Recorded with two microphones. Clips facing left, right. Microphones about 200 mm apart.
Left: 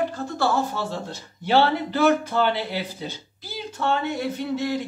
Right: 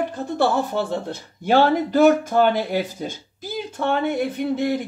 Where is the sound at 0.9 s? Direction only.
50° right (ahead or behind).